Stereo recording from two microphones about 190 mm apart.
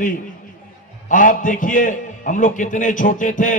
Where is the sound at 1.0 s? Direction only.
45° left (ahead or behind).